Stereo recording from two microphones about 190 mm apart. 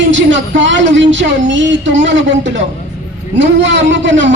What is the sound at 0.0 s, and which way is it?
A woman's voice, 75° right (ahead or behind).